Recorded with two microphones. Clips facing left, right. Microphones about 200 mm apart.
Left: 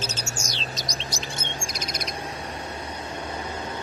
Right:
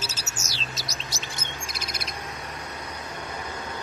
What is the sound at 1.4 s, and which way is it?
Bird, 35° left (ahead or behind).